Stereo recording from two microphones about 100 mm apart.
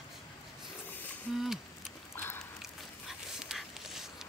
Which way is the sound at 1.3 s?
5° right (ahead or behind).